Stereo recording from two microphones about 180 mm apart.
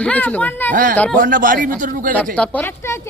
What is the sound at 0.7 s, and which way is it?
Speech, 50° right (ahead or behind).